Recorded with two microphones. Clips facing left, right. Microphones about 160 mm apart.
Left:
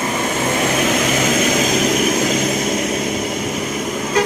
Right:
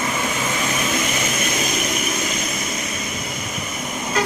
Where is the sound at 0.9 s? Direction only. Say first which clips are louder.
Left 7 dB; 90° left.